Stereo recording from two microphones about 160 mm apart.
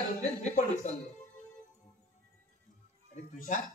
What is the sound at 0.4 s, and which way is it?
Speech, 45° left (ahead or behind).